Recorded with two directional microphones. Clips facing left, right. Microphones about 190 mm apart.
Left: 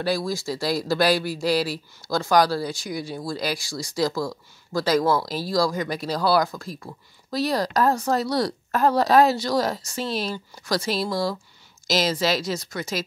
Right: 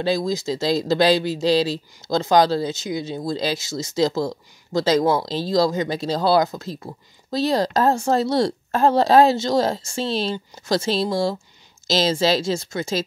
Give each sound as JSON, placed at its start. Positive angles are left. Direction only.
{"t": 0.0, "sound": "speech", "side_deg": -20}